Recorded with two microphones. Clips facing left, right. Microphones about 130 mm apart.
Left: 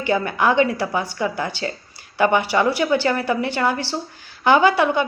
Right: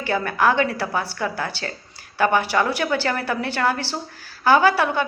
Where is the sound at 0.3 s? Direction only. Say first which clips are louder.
Left 1 dB; 15° left (ahead or behind).